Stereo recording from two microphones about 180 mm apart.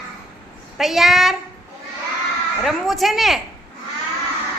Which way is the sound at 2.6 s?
Centre (ahead or behind).